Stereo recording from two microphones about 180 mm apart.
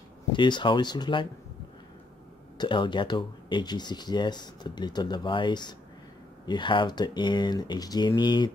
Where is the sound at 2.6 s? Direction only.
25° left (ahead or behind).